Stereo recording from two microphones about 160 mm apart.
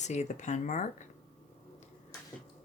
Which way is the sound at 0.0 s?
45° left (ahead or behind).